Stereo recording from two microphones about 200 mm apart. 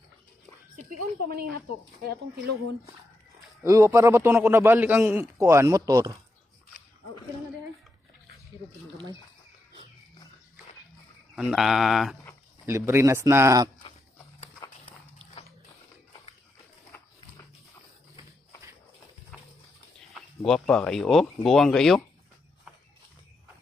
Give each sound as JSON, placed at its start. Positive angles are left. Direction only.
{"t": 2.0, "sound": "speech", "side_deg": -50}
{"t": 3.6, "sound": "a man's voice", "side_deg": -15}
{"t": 11.3, "sound": "speech", "side_deg": 0}
{"t": 12.6, "sound": "a man's voice", "side_deg": -15}
{"t": 20.0, "sound": "speech", "side_deg": 0}